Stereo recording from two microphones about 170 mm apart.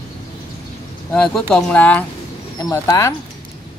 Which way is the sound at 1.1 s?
5° left (ahead or behind).